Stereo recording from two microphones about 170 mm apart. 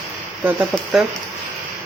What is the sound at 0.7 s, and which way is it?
Speech, centre (ahead or behind).